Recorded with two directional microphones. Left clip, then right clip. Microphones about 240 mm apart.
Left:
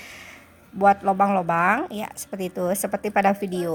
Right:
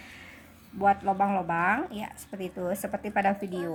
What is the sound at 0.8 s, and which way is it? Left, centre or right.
A woman's voice, left.